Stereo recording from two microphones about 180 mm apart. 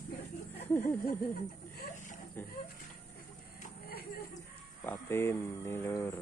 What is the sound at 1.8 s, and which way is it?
Chuckle, 45° left (ahead or behind).